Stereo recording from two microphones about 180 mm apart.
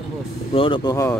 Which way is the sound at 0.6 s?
30° left (ahead or behind).